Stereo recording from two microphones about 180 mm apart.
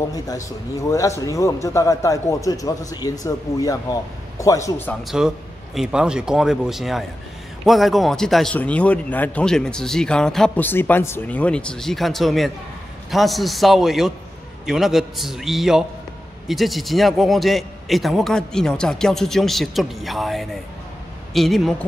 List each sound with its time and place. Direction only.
0.1 s a man's voice: 20° left (ahead or behind)
5.0 s a man's voice: 5° right (ahead or behind)